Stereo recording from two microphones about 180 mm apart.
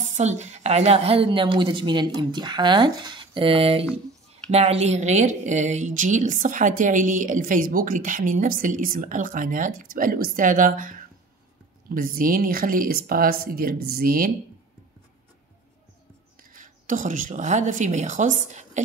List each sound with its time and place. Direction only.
0.1 s a woman's voice: 40° right (ahead or behind)
16.3 s speech: 45° right (ahead or behind)